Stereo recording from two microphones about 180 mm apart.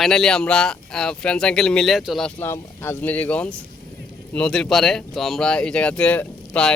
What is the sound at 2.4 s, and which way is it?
Speech, 10° left (ahead or behind).